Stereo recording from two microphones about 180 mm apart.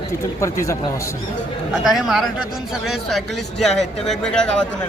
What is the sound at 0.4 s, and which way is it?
Speech, 15° left (ahead or behind).